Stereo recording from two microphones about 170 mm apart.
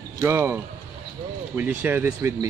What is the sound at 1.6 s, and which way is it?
Speech, 10° right (ahead or behind).